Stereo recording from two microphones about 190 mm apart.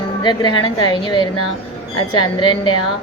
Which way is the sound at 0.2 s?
25° left (ahead or behind).